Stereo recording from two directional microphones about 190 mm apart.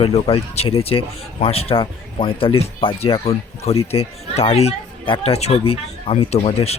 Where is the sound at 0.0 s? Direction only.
30° left (ahead or behind).